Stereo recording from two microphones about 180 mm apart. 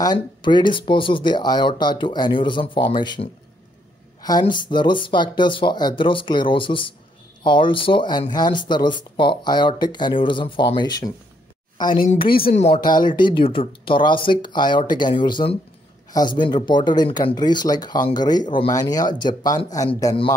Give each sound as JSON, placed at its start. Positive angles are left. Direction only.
{"t": 0.0, "sound": "speech", "side_deg": 25}
{"t": 12.0, "sound": "a woman's voice", "side_deg": 50}
{"t": 12.4, "sound": "speech", "side_deg": 35}